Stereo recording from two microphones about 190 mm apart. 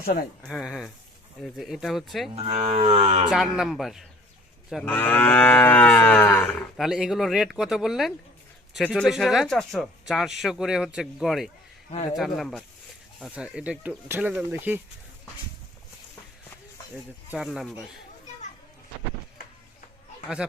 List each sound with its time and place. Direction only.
0.0 s speech: 55° left (ahead or behind)
0.4 s speech: centre (ahead or behind)
2.3 s cattle: 35° right (ahead or behind)
3.2 s speech: 5° right (ahead or behind)
4.7 s livestock: 5° left (ahead or behind)
6.7 s speech: 5° right (ahead or behind)
17.3 s speech: centre (ahead or behind)
20.4 s speech: 5° right (ahead or behind)